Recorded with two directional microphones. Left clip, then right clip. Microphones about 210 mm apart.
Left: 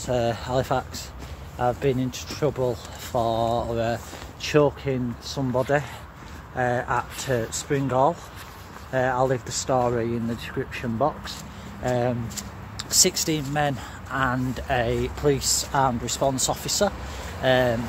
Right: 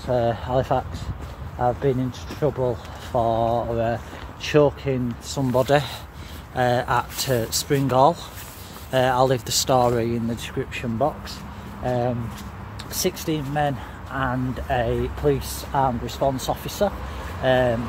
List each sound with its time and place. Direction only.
0.0 s speech: centre (ahead or behind)